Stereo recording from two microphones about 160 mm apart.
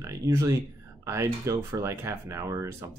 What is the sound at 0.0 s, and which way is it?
Speech, 15° right (ahead or behind).